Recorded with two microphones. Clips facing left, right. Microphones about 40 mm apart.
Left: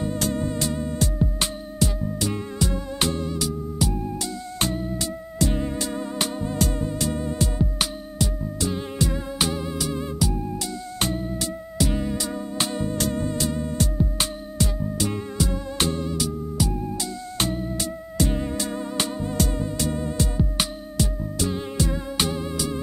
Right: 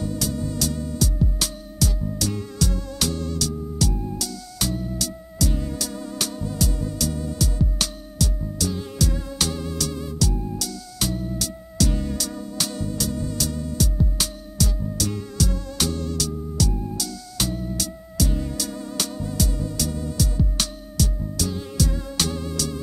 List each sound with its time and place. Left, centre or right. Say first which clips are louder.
0.0 s music: left 2 dB; left